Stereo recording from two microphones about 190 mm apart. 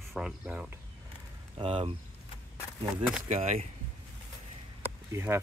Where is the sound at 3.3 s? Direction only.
35° right (ahead or behind).